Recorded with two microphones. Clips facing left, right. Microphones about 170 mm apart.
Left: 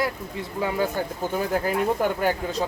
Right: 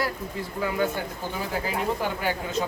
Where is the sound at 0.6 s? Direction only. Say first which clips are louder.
Left 2 dB; 35° left (ahead or behind).